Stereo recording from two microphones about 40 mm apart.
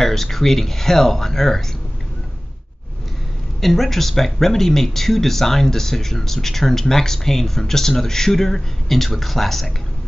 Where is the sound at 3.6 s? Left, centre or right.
Centre.